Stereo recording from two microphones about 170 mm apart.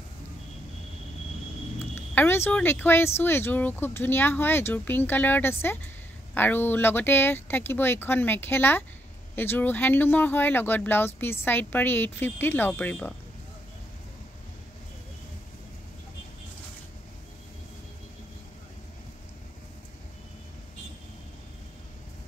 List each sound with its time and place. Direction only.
2.1 s speech: 15° left (ahead or behind)